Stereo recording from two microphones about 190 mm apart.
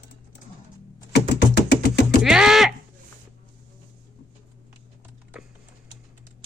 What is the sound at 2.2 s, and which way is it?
Livestock, centre (ahead or behind).